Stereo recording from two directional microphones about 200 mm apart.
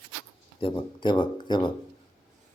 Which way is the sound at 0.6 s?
25° left (ahead or behind).